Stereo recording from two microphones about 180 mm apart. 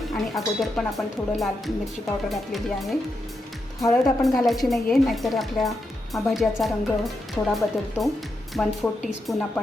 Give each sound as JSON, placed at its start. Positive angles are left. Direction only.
{"t": 0.1, "sound": "a woman's voice", "side_deg": 0}
{"t": 3.8, "sound": "speech", "side_deg": 15}
{"t": 4.0, "sound": "a woman's voice", "side_deg": 0}